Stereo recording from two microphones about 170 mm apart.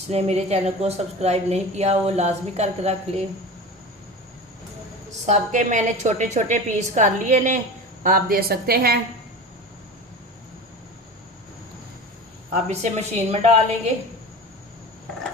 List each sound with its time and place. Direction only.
0.1 s a woman's voice: 40° right (ahead or behind)
5.2 s a woman's voice: 45° right (ahead or behind)
8.0 s a woman's voice: 55° right (ahead or behind)
12.5 s a woman's voice: 40° right (ahead or behind)